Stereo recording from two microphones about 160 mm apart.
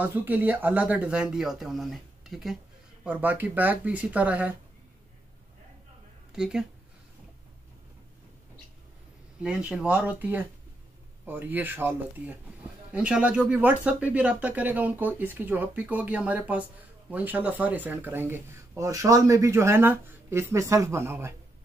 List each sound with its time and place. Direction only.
0.0 s speech: 10° right (ahead or behind)
6.3 s speech: 5° right (ahead or behind)
9.4 s speech: 5° right (ahead or behind)